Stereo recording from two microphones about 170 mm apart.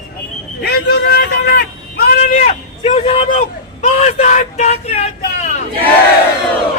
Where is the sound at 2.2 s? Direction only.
40° left (ahead or behind).